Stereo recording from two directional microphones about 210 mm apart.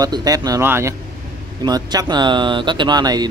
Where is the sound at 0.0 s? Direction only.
20° right (ahead or behind).